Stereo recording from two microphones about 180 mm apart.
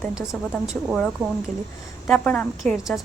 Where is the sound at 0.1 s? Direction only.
5° right (ahead or behind).